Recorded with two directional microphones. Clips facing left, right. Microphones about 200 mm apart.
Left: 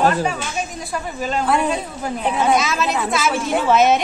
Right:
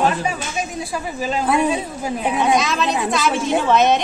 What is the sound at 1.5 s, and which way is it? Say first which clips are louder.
Speech: right 2 dB; 20° right (ahead or behind).